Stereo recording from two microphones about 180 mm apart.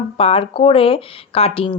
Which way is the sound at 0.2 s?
30° left (ahead or behind).